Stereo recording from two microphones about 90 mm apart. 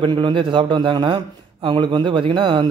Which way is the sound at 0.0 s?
65° right (ahead or behind).